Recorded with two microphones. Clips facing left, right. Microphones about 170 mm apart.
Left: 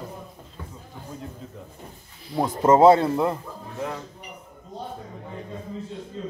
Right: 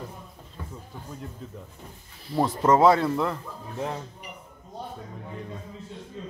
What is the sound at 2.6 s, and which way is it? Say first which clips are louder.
Speech: left 4 dB; 25° left (ahead or behind).